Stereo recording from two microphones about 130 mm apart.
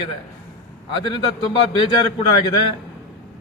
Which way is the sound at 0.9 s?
40° left (ahead or behind).